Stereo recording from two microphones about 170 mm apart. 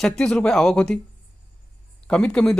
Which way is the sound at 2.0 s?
5° left (ahead or behind).